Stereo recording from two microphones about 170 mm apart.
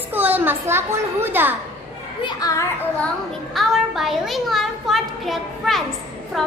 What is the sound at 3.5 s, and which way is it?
A child's voice, centre (ahead or behind).